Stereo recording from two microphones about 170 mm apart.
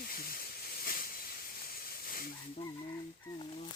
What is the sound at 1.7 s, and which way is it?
Hiss, 60° left (ahead or behind).